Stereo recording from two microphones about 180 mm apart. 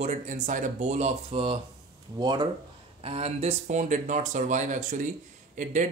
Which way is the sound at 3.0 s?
35° right (ahead or behind).